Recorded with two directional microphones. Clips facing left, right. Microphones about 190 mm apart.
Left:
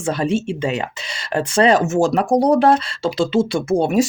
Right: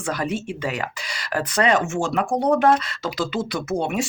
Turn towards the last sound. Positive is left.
turn(degrees=35)  # may be behind; listen again after turning